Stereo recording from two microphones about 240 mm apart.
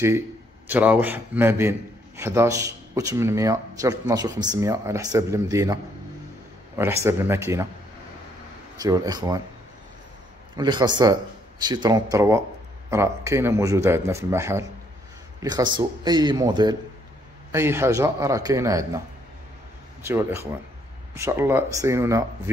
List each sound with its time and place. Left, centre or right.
0.7 s a man's voice: centre
6.8 s a man's voice: centre
8.7 s a man's voice: centre
10.5 s a man's voice: centre